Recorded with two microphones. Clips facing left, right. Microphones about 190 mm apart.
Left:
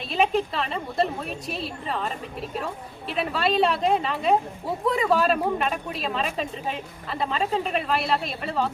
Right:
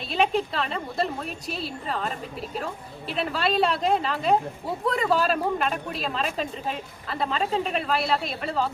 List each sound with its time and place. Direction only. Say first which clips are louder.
0.1 s speech: left 1 dB; centre (ahead or behind)